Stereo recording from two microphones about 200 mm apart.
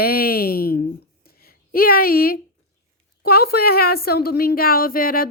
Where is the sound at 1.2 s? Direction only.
50° left (ahead or behind).